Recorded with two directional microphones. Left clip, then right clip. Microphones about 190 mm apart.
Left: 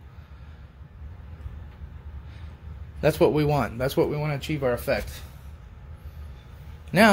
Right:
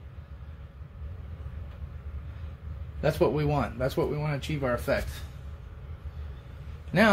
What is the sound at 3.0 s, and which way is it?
Speech, 55° left (ahead or behind).